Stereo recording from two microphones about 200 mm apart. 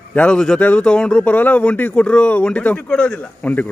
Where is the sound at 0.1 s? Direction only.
5° left (ahead or behind).